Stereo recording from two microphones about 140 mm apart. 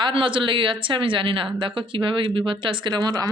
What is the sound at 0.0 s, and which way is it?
Speech, 35° right (ahead or behind).